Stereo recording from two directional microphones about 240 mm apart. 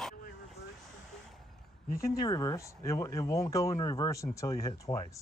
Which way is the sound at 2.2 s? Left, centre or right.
Centre.